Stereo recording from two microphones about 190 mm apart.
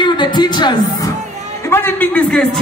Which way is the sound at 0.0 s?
25° left (ahead or behind).